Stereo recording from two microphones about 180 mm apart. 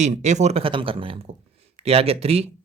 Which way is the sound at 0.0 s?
40° right (ahead or behind).